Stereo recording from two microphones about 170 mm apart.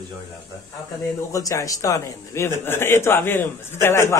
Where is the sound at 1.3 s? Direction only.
20° left (ahead or behind).